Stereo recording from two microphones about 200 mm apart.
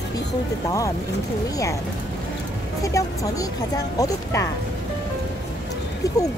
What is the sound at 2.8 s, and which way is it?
Speech, 15° left (ahead or behind).